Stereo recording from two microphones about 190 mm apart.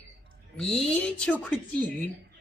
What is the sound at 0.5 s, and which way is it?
Speech, 5° left (ahead or behind).